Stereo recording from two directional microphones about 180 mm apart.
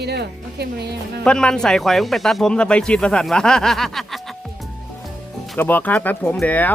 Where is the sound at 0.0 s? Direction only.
65° right (ahead or behind).